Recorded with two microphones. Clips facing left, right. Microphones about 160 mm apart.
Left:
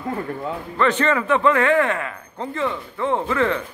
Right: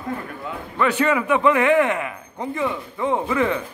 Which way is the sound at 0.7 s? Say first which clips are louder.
Even; 10° right (ahead or behind).